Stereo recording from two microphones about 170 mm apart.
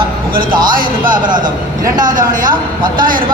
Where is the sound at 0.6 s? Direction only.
55° right (ahead or behind).